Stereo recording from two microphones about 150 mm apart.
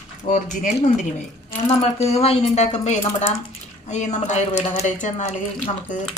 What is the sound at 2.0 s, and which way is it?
Speech, 45° left (ahead or behind).